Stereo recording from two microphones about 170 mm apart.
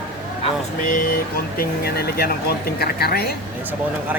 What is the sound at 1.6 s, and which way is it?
Speech, 65° left (ahead or behind).